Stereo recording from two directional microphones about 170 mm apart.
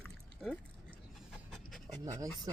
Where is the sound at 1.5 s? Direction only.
Centre (ahead or behind).